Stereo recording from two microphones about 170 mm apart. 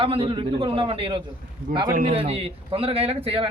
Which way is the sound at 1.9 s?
55° right (ahead or behind).